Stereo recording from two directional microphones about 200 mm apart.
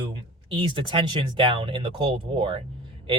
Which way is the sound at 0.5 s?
25° right (ahead or behind).